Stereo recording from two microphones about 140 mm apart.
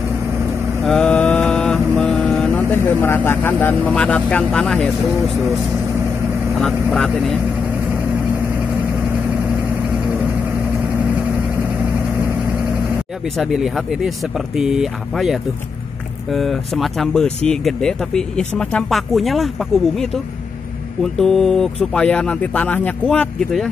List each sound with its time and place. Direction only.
0.8 s mantra: 5° left (ahead or behind)
3.6 s speech: 10° left (ahead or behind)
6.6 s speech: centre (ahead or behind)
13.4 s speech: centre (ahead or behind)
21.0 s speech: 5° left (ahead or behind)